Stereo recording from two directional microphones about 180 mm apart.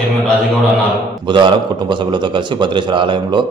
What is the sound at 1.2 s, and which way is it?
A man's voice, 25° right (ahead or behind).